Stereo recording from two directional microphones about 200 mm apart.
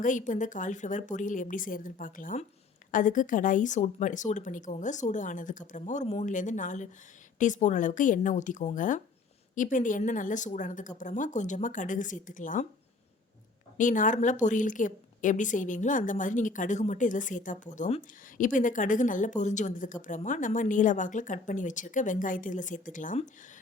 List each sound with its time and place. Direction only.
0.0 s speech: 40° left (ahead or behind)
13.7 s speech: 40° left (ahead or behind)